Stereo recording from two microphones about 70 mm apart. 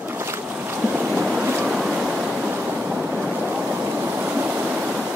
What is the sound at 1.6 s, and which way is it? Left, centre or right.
Waves, centre.